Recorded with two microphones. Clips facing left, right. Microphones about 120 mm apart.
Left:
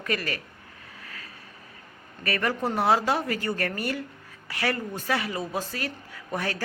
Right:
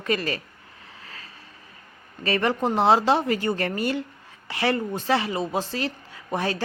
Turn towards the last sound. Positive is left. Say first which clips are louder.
# right 4 dB
turn(degrees=-20)  # may be behind; listen again after turning